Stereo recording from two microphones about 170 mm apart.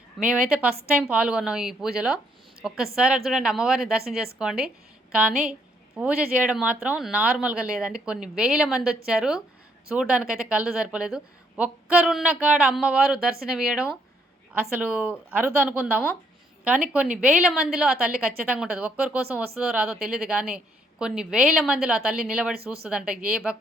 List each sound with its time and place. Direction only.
0.2 s a woman's voice: 5° right (ahead or behind)